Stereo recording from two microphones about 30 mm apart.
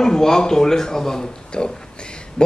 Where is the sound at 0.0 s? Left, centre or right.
Centre.